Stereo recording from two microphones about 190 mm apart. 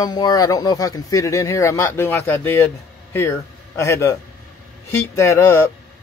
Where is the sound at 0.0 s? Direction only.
20° left (ahead or behind).